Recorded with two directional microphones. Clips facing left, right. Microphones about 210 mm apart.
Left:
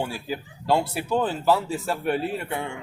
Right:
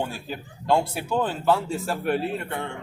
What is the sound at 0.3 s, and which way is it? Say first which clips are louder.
A man's voice: even; centre (ahead or behind).